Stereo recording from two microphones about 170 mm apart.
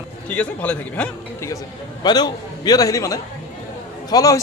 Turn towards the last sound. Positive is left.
turn(degrees=20)  # may be behind; listen again after turning